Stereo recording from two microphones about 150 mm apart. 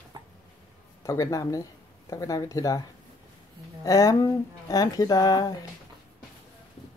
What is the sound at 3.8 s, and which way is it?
Speech, 20° left (ahead or behind).